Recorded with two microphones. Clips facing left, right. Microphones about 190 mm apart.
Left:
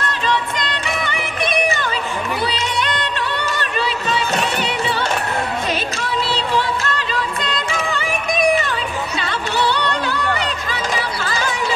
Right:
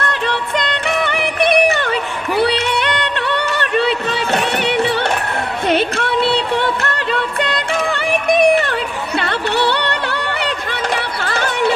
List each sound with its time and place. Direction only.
0.0 s music: 60° right (ahead or behind)